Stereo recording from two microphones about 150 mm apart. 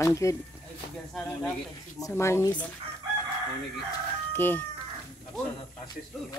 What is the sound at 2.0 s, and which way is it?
Speech, 20° left (ahead or behind).